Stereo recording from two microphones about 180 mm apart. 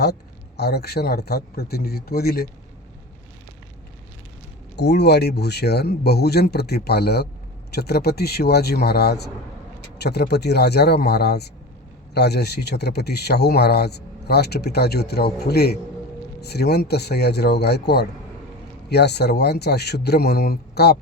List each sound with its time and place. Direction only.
0.0 s speech: 65° left (ahead or behind)
4.8 s speech: 65° left (ahead or behind)